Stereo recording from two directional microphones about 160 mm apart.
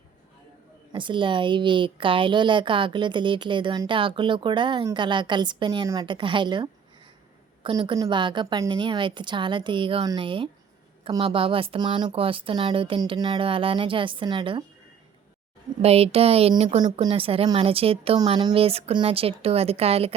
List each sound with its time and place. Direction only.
0.9 s a woman's voice: 30° right (ahead or behind)
15.8 s speech: 40° right (ahead or behind)